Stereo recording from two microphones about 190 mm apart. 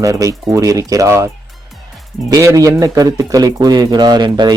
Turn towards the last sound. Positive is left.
turn(degrees=-25)  # may be behind; listen again after turning